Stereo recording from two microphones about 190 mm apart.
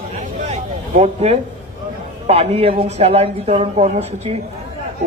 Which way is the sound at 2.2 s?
35° right (ahead or behind).